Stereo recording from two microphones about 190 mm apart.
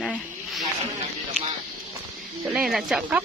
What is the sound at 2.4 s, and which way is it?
Speech, 5° right (ahead or behind).